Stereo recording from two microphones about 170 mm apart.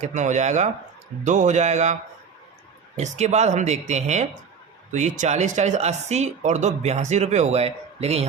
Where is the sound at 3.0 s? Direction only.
40° right (ahead or behind).